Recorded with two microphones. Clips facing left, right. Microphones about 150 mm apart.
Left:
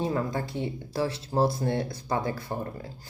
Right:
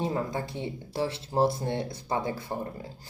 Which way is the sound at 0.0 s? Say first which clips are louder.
Left 1 dB; 25° right (ahead or behind).